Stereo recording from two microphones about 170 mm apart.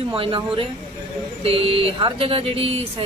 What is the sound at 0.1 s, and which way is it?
Speech, 30° right (ahead or behind).